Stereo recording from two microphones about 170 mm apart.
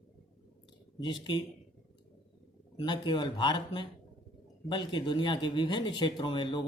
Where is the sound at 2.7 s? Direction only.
25° left (ahead or behind).